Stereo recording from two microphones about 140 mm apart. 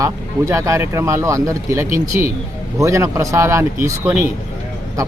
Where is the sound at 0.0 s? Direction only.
20° right (ahead or behind).